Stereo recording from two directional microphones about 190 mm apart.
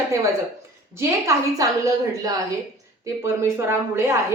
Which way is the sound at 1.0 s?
15° right (ahead or behind).